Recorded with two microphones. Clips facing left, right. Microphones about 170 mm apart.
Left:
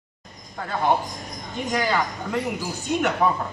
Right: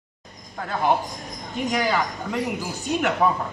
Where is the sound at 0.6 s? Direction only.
Centre (ahead or behind).